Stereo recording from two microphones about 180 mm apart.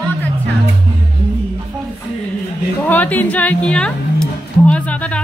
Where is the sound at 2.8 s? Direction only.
10° left (ahead or behind).